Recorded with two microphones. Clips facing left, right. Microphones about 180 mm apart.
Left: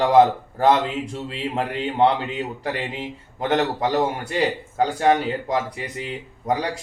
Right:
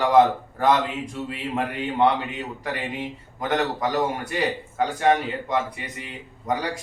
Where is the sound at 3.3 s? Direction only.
30° left (ahead or behind).